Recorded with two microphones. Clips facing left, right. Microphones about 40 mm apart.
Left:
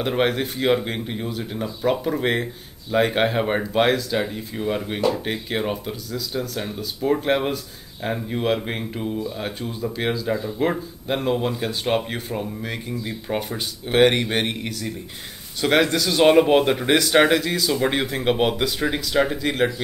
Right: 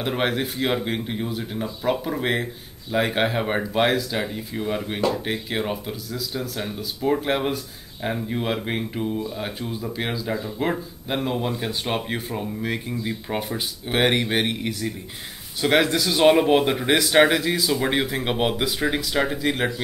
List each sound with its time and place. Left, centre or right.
0.0 s speech: centre